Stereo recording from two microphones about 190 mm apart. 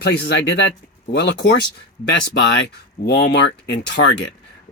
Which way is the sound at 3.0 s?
65° left (ahead or behind).